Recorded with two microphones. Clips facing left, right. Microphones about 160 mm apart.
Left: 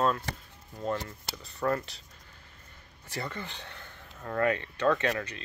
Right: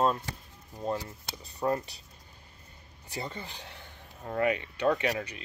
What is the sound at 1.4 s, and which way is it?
Speech, 20° right (ahead or behind).